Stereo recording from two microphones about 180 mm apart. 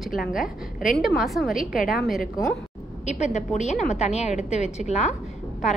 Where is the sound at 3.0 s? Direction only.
40° left (ahead or behind).